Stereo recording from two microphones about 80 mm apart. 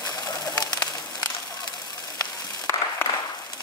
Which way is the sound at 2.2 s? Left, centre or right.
Left.